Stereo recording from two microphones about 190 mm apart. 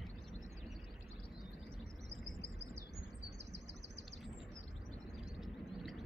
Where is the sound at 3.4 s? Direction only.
65° right (ahead or behind).